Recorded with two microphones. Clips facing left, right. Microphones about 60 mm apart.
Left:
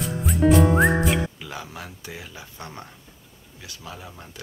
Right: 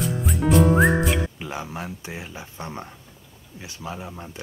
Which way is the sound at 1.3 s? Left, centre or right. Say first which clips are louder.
Right 4 dB; right.